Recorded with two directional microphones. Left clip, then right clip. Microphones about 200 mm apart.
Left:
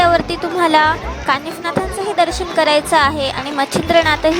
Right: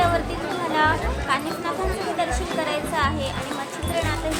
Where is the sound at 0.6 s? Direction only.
55° left (ahead or behind).